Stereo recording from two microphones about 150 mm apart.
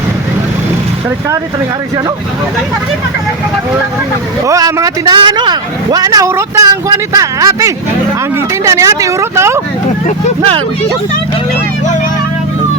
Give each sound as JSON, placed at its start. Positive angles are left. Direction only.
{"t": 4.4, "sound": "a man's voice", "side_deg": -20}